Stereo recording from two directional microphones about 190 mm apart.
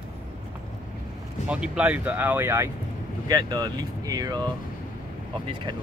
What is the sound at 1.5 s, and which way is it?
Speech, 5° right (ahead or behind).